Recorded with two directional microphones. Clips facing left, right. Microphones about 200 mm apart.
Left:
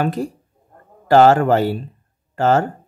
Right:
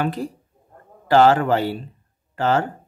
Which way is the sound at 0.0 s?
45° left (ahead or behind).